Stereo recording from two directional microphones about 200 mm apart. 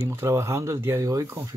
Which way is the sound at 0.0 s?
15° right (ahead or behind).